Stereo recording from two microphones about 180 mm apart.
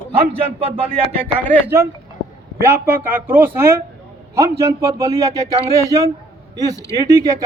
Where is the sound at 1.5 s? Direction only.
15° right (ahead or behind).